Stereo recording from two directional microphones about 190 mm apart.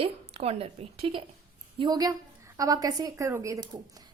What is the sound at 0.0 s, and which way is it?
A woman's voice, 30° right (ahead or behind).